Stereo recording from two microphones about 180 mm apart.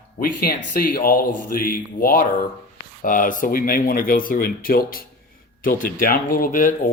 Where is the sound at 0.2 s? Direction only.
50° left (ahead or behind).